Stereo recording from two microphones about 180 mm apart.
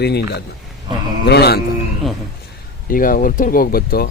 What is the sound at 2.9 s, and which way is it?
Speech, 50° left (ahead or behind).